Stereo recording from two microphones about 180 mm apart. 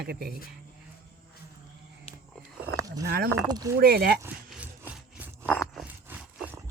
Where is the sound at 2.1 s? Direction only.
35° left (ahead or behind).